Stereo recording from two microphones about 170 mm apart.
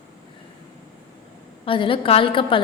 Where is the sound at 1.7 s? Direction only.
30° left (ahead or behind).